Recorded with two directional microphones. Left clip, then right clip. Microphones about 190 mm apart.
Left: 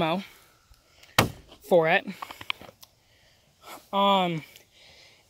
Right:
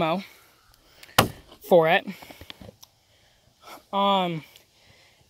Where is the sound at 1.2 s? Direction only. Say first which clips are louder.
Right 2 dB; 25° right (ahead or behind).